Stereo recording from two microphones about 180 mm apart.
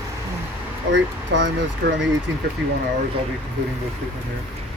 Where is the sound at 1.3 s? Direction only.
80° right.